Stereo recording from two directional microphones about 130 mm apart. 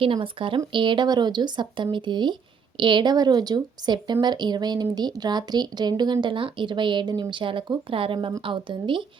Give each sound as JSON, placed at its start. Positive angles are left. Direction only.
{"t": 0.0, "sound": "speech", "side_deg": -45}